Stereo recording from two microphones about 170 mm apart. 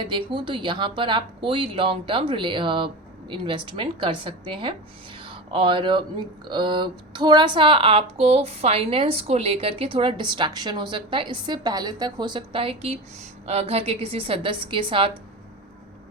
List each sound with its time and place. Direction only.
0.0 s a woman's voice: 30° right (ahead or behind)